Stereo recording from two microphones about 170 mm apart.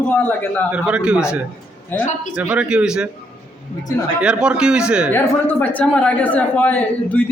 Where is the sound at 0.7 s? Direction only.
5° right (ahead or behind).